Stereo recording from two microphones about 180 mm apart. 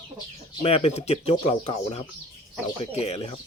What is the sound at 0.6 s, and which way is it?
Speech, 35° left (ahead or behind).